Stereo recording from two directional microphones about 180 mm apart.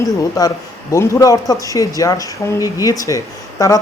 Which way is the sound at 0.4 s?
20° left (ahead or behind).